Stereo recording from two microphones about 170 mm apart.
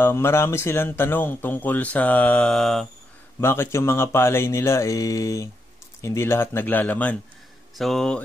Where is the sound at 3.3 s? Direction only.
15° left (ahead or behind).